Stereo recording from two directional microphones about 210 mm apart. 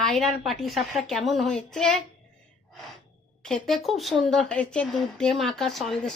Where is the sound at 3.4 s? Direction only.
5° left (ahead or behind).